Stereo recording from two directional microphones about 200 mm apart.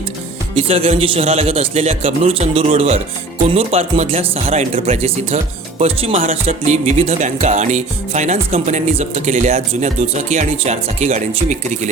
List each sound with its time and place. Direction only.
0.5 s a man's voice: 30° right (ahead or behind)